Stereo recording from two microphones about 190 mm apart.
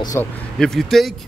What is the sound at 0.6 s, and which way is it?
Speech, centre (ahead or behind).